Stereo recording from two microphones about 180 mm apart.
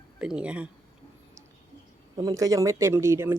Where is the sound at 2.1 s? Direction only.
20° right (ahead or behind).